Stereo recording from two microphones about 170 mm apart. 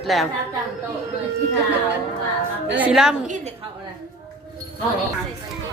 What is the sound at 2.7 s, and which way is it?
Speech, 5° right (ahead or behind).